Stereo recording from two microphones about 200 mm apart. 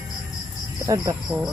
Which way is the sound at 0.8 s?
15° right (ahead or behind).